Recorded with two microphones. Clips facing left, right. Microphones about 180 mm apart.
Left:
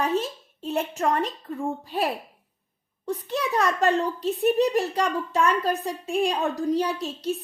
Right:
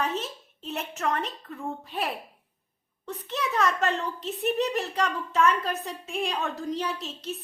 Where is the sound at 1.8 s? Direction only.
35° left (ahead or behind).